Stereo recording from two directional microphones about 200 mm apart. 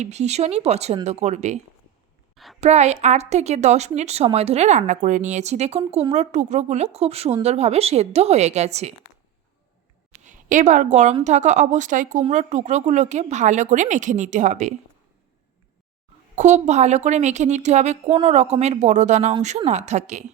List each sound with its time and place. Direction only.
0.0 s a woman's voice: 35° right (ahead or behind)
2.3 s a sound: centre (ahead or behind)
2.6 s a woman's voice: 35° right (ahead or behind)
10.2 s a woman's voice: 40° right (ahead or behind)
16.3 s a woman's voice: 35° right (ahead or behind)